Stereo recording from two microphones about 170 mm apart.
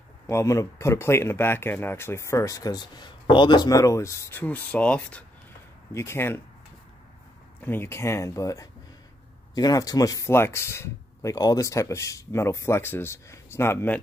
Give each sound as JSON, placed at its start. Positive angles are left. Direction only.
{"t": 0.3, "sound": "speech", "side_deg": 15}
{"t": 7.6, "sound": "speech", "side_deg": 15}